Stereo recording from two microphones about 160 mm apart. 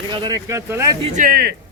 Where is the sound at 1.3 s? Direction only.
80° right.